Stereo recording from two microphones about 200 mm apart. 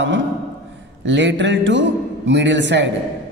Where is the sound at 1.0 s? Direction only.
65° right (ahead or behind).